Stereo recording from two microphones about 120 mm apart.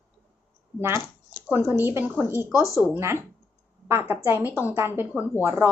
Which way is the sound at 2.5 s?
25° left (ahead or behind).